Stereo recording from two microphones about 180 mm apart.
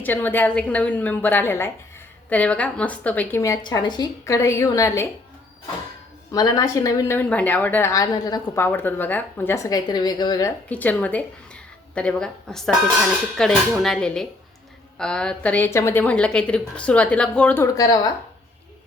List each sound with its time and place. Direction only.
0.0 s a woman's voice: 10° left (ahead or behind)
6.3 s a woman's voice: 20° left (ahead or behind)
10.7 s a woman's voice: 10° left (ahead or behind)